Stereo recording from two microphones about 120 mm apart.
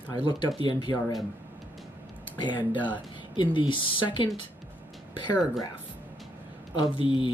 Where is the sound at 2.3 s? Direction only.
40° left (ahead or behind).